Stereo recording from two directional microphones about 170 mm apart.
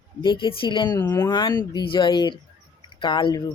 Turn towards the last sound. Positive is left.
turn(degrees=30)  # may be behind; listen again after turning